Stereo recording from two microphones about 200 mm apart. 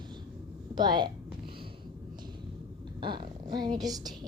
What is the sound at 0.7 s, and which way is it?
Speech, 20° right (ahead or behind).